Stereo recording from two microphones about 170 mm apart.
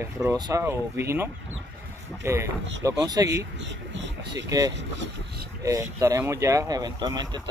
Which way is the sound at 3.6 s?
90° right.